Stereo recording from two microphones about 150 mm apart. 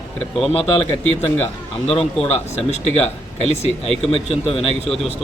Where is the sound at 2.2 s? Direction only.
45° left (ahead or behind).